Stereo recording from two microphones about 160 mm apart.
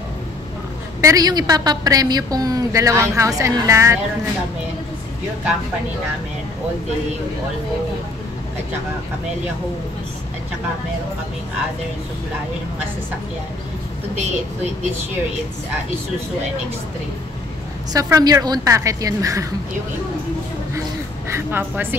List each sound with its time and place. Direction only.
1.0 s a woman's voice: 25° right (ahead or behind)
17.9 s a woman's voice: 20° right (ahead or behind)
21.3 s speech: 15° right (ahead or behind)